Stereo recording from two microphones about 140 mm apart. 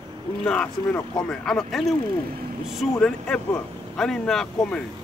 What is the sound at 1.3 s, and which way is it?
Speech, 5° left (ahead or behind).